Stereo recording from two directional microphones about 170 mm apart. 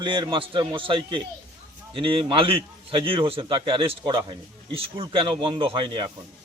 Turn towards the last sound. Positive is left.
turn(degrees=-30)  # may be behind; listen again after turning